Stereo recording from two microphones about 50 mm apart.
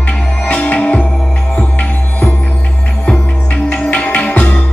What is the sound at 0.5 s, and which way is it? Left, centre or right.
Music, left.